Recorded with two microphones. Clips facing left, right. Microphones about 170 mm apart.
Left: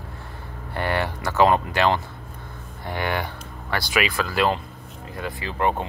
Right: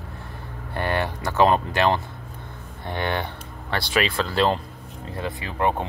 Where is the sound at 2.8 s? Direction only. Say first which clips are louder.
Even; 25° right (ahead or behind).